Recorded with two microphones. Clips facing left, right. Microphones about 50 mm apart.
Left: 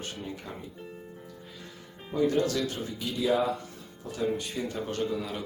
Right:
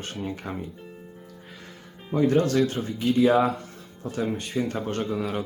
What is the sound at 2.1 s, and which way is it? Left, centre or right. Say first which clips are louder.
Speech: right 5 dB; right.